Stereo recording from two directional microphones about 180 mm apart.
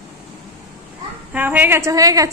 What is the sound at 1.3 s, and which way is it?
A woman's voice, 10° right (ahead or behind).